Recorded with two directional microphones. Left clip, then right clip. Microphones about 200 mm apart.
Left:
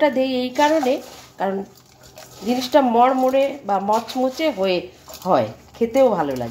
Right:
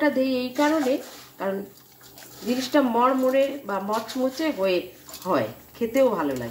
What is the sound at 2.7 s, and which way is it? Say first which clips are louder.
Speech: left 6 dB; 35° left (ahead or behind).